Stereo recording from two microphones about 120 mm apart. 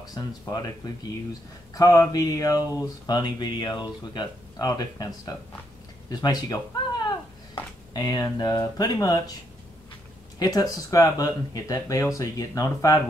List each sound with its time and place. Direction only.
0.1 s speech: 30° left (ahead or behind)
7.1 s a sound: 35° left (ahead or behind)
10.4 s speech: 30° left (ahead or behind)